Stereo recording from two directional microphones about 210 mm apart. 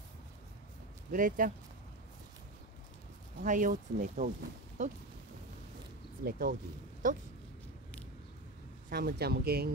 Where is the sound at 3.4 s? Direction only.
40° right (ahead or behind).